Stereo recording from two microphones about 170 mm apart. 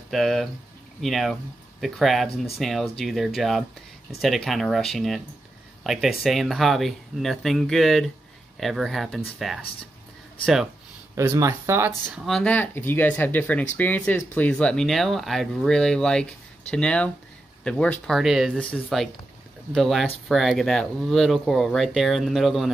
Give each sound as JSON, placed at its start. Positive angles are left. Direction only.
{"t": 0.1, "sound": "speech", "side_deg": 0}
{"t": 11.1, "sound": "speech", "side_deg": -15}
{"t": 12.1, "sound": "speech", "side_deg": 0}